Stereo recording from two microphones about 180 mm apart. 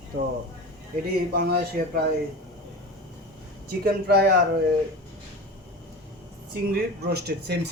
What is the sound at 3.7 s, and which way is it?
Speech, 65° right (ahead or behind).